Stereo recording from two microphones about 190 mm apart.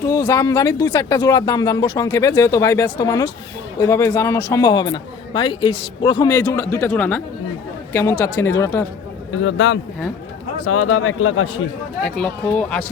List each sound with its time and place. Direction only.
0.1 s a man's voice: 20° left (ahead or behind)
8.2 s a man's voice: 15° left (ahead or behind)
9.4 s speech: 75° left (ahead or behind)
10.6 s a man's voice: 90° left
12.0 s speech: 5° left (ahead or behind)